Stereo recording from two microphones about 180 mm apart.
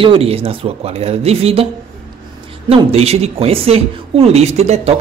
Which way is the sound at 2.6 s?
35° right (ahead or behind).